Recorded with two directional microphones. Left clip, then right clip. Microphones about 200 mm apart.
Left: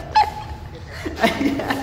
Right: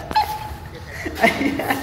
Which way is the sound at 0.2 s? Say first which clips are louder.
Left 3 dB; 35° left (ahead or behind).